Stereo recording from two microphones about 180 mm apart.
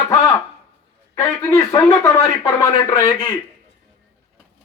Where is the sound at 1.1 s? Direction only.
15° left (ahead or behind).